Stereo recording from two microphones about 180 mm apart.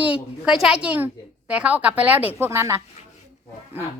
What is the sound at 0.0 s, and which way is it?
A woman's voice, 5° right (ahead or behind).